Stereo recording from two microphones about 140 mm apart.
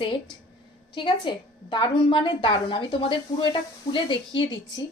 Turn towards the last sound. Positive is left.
turn(degrees=35)  # may be behind; listen again after turning